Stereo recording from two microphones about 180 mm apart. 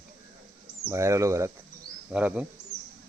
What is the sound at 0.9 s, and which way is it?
Speech, 15° right (ahead or behind).